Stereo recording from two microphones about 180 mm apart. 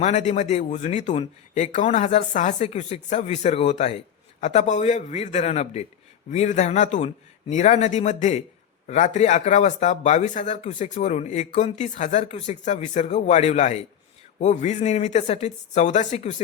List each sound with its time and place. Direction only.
0.0 s speech: 40° left (ahead or behind)